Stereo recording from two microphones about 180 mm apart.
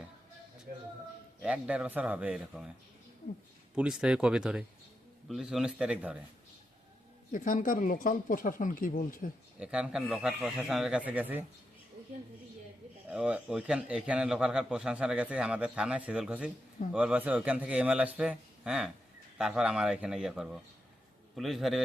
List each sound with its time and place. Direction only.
1.4 s a man's voice: 5° right (ahead or behind)
4.0 s a man's voice: 5° right (ahead or behind)
7.3 s speech: 50° left (ahead or behind)
9.6 s a man's voice: 5° right (ahead or behind)
13.1 s a man's voice: 5° right (ahead or behind)